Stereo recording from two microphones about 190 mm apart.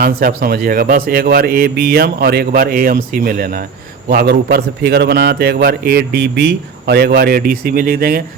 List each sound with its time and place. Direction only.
0.0 s a man's voice: 50° right (ahead or behind)